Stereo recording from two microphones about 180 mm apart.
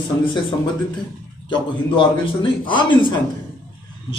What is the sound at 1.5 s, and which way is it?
A man's voice, 25° left (ahead or behind).